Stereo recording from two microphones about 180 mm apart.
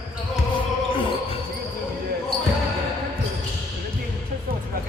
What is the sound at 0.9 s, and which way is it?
Basketball bounce, 30° left (ahead or behind).